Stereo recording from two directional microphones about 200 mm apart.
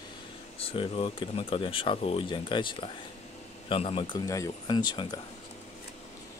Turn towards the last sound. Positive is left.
turn(degrees=20)  # may be behind; listen again after turning